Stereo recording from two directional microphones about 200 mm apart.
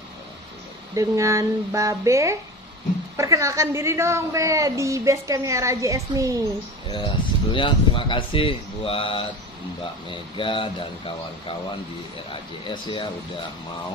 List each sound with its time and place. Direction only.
0.9 s a woman's voice: 15° right (ahead or behind)
6.9 s speech: 25° left (ahead or behind)
12.6 s speech: 25° left (ahead or behind)